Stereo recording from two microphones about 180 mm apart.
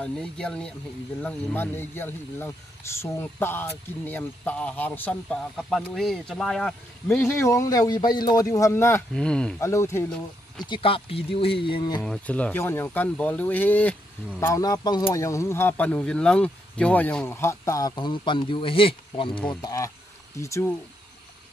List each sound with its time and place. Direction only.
0.0 s speech: 5° left (ahead or behind)
7.1 s speech: 15° left (ahead or behind)
9.6 s speech: 15° left (ahead or behind)
10.6 s speech: 30° left (ahead or behind)
12.0 s speech: 5° left (ahead or behind); by 19.4 s 30° left (ahead or behind)
19.4 s speech: 15° left (ahead or behind)